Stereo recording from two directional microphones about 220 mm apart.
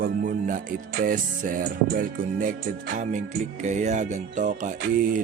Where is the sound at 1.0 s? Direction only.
40° right (ahead or behind).